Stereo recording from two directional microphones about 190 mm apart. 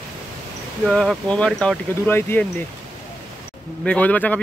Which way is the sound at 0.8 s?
Centre (ahead or behind).